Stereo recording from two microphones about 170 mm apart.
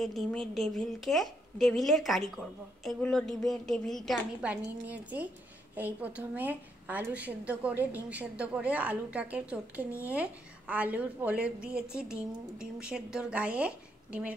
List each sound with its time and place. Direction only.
0.0 s a woman's voice: 5° left (ahead or behind)